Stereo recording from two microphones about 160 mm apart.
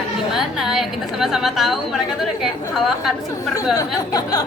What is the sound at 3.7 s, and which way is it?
Speech, 25° left (ahead or behind).